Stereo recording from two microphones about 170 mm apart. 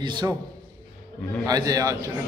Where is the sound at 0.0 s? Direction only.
25° right (ahead or behind).